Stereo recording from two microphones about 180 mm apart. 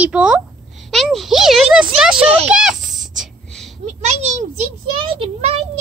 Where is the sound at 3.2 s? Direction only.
Centre (ahead or behind).